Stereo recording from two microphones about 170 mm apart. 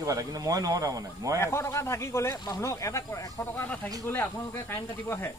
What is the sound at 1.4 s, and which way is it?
Speech, 15° left (ahead or behind).